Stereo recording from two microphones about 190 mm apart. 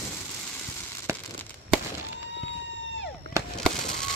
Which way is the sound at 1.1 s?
15° right (ahead or behind).